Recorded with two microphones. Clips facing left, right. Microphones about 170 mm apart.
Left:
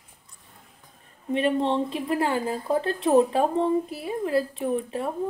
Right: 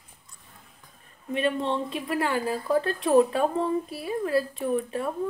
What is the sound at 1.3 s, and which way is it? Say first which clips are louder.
Speech: left 3 dB; 30° left (ahead or behind).